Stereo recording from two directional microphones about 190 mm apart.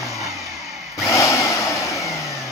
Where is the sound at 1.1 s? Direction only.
15° left (ahead or behind).